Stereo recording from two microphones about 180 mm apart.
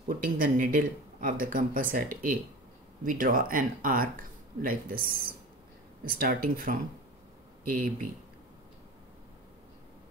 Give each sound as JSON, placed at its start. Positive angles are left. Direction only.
{"t": 0.1, "sound": "speech", "side_deg": -50}